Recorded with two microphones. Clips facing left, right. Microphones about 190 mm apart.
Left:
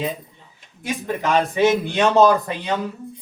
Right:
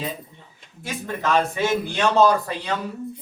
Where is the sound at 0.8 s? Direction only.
15° left (ahead or behind).